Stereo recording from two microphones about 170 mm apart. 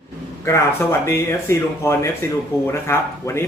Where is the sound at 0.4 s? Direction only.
15° left (ahead or behind).